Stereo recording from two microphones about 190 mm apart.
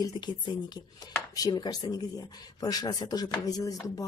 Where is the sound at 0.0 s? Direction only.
25° left (ahead or behind).